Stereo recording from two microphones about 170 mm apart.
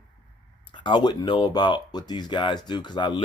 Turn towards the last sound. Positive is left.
turn(degrees=25)  # may be behind; listen again after turning